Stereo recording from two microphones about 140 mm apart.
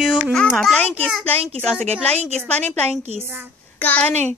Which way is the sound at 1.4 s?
50° right (ahead or behind).